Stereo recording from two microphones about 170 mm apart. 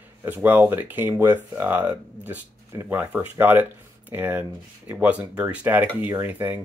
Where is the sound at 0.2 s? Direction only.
10° right (ahead or behind).